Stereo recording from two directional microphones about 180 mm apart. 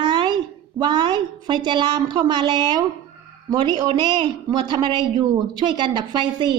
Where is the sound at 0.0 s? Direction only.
25° right (ahead or behind).